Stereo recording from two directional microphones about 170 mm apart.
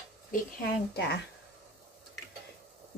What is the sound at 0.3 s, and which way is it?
Speech, 50° left (ahead or behind).